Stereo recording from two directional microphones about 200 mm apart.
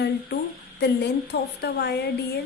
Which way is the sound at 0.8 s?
55° left (ahead or behind).